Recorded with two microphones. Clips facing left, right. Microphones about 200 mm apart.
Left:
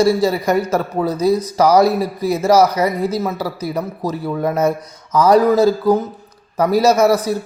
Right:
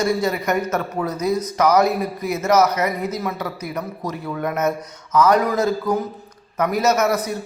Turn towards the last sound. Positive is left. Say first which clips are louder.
# left 6 dB
turn(degrees=30)  # may be behind; listen again after turning